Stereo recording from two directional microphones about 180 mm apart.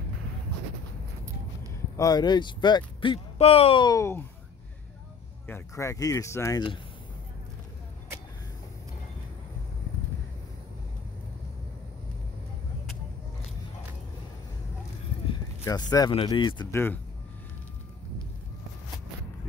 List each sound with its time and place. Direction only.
2.0 s speech: 20° left (ahead or behind)
5.5 s speech: 15° left (ahead or behind)
15.6 s speech: 20° left (ahead or behind)
16.7 s speech: 10° left (ahead or behind)